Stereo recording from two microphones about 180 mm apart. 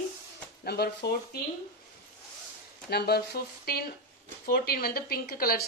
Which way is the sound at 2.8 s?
65° left (ahead or behind).